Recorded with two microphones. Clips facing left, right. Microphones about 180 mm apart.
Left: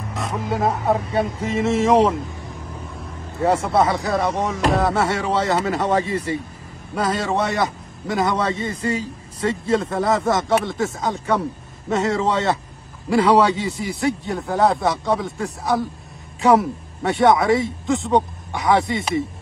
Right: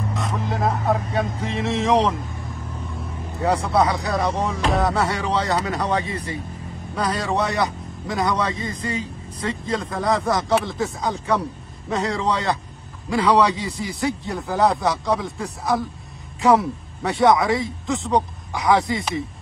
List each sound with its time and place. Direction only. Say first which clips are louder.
0.1 s vehicle: left 5 dB; centre (ahead or behind)
0.6 s a man's voice: left 2 dB; centre (ahead or behind)
3.3 s a man's voice: left 2 dB; centre (ahead or behind)
5.9 s speech: left 4 dB; 35° left (ahead or behind)
7.0 s a man's voice: left 2 dB; centre (ahead or behind)
8.5 s speech: left 4 dB; 30° left (ahead or behind)
10.0 s a man's voice: left 2 dB; centre (ahead or behind)
13.3 s a man's voice: even; centre (ahead or behind)